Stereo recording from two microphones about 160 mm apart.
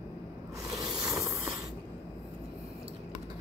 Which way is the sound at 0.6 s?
25° right (ahead or behind).